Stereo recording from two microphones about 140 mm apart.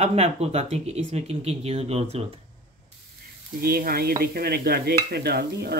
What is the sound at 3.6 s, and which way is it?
Speech, 90° right.